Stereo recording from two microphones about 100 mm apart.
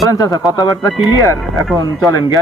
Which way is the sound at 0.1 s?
40° left (ahead or behind).